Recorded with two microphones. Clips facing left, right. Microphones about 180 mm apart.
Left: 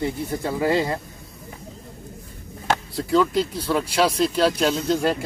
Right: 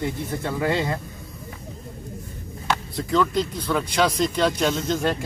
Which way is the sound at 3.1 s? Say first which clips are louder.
Left 2 dB; 5° left (ahead or behind).